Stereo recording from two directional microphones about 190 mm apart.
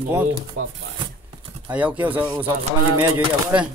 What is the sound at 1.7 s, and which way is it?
Speech, 10° right (ahead or behind).